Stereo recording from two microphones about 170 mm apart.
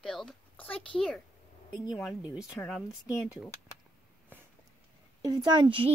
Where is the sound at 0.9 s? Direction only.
5° left (ahead or behind).